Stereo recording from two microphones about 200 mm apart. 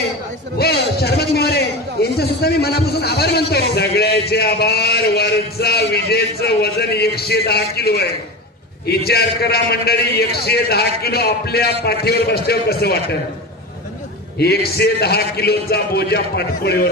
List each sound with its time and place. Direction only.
0.6 s a man's voice: 50° left (ahead or behind)
14.4 s a man's voice: 55° left (ahead or behind)